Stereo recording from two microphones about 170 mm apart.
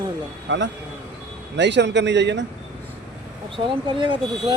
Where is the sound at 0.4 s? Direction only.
90° right.